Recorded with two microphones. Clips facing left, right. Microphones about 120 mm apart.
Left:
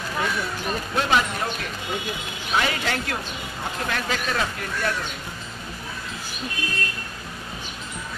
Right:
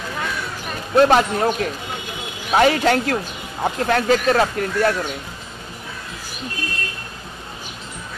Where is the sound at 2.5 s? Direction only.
45° right (ahead or behind).